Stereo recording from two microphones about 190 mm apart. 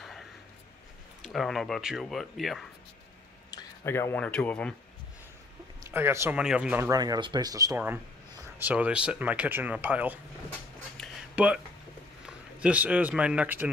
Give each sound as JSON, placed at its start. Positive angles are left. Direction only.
{"t": 1.2, "sound": "speech", "side_deg": 0}
{"t": 3.4, "sound": "speech", "side_deg": 15}
{"t": 5.9, "sound": "speech", "side_deg": -10}
{"t": 6.9, "sound": "speech", "side_deg": -20}
{"t": 11.0, "sound": "a sound", "side_deg": -5}
{"t": 12.3, "sound": "speech", "side_deg": -5}